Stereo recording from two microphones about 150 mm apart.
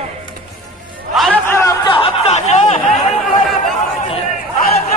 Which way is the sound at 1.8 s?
35° left (ahead or behind).